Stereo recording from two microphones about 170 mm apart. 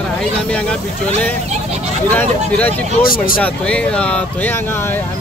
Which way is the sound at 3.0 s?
60° left (ahead or behind).